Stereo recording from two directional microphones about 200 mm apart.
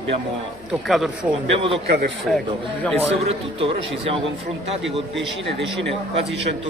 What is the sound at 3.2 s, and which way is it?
A man's voice, 30° right (ahead or behind).